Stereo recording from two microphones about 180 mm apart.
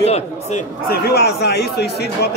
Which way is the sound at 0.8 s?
60° left (ahead or behind).